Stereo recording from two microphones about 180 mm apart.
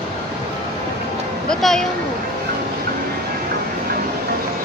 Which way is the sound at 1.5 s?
Centre (ahead or behind).